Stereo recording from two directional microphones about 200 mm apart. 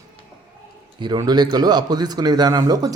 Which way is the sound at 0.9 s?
20° right (ahead or behind).